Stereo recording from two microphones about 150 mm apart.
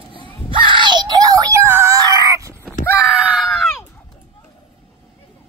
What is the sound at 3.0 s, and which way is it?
Screaming, 5° right (ahead or behind).